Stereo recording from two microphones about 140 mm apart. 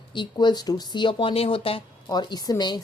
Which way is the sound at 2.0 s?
30° left (ahead or behind).